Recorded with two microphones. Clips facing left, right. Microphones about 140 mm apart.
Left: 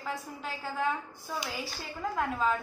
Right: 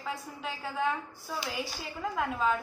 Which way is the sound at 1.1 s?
20° left (ahead or behind).